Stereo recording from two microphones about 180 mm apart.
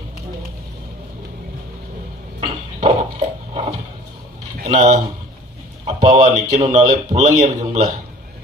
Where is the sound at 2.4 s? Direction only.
35° right (ahead or behind).